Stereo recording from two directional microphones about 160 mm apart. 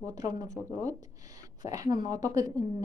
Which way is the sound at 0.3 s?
25° right (ahead or behind).